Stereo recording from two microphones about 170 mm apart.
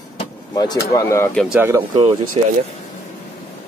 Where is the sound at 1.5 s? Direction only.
15° right (ahead or behind).